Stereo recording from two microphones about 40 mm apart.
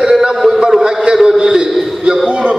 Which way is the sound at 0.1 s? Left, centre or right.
Centre.